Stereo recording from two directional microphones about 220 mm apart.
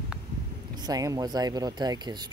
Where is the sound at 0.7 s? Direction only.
20° right (ahead or behind).